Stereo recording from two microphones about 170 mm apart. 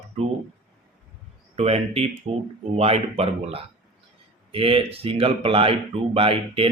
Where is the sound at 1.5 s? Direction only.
35° right (ahead or behind).